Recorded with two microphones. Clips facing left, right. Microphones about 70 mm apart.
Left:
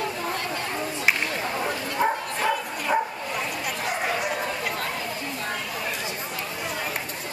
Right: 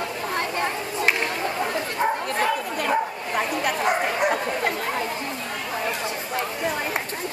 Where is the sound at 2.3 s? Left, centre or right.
Right.